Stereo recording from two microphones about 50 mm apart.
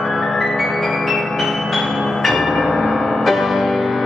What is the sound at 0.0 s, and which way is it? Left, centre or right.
Music, centre.